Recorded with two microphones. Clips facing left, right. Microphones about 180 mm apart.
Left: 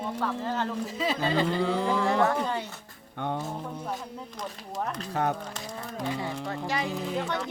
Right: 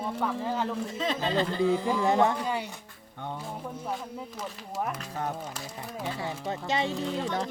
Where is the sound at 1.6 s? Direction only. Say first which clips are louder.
Right 2 dB; 70° left (ahead or behind).